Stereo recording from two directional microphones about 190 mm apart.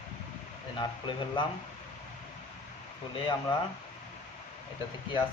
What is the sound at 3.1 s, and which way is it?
Speech, 25° left (ahead or behind).